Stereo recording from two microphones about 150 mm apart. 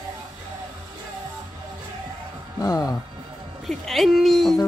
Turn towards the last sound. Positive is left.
turn(degrees=0)  # may be behind; listen again after turning